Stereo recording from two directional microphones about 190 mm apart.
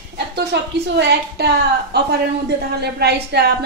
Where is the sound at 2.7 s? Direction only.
60° right (ahead or behind).